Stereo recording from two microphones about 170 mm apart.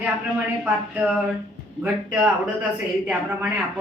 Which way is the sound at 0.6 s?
10° right (ahead or behind).